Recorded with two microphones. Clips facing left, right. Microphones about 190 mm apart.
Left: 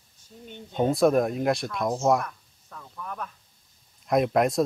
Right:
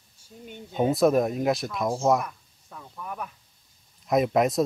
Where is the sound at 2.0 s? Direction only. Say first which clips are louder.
Even; 5° right (ahead or behind).